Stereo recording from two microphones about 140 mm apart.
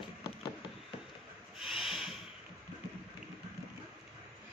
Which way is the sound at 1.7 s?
5° right (ahead or behind).